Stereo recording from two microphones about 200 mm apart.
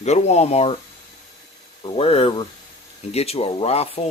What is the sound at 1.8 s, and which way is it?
Speech, 25° left (ahead or behind).